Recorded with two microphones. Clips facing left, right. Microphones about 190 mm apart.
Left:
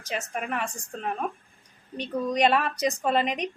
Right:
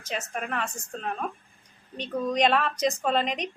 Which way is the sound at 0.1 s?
15° left (ahead or behind).